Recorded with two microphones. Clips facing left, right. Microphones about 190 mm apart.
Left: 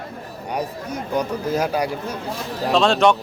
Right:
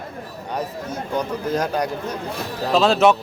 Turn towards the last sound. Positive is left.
turn(degrees=-5)  # may be behind; listen again after turning